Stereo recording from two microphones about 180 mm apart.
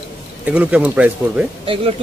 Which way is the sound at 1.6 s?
30° right (ahead or behind).